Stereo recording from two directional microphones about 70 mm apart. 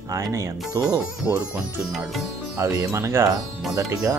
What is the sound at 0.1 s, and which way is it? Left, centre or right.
Speech, right.